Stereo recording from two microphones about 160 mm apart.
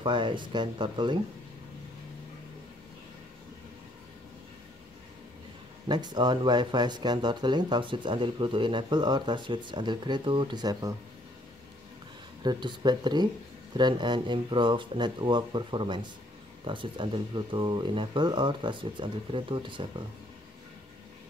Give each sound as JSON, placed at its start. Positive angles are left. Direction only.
{"t": 0.0, "sound": "speech", "side_deg": -30}
{"t": 5.9, "sound": "speech", "side_deg": -25}
{"t": 12.4, "sound": "speech", "side_deg": -25}